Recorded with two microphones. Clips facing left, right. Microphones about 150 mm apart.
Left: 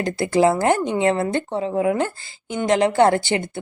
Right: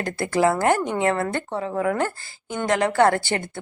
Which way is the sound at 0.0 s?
20° left (ahead or behind).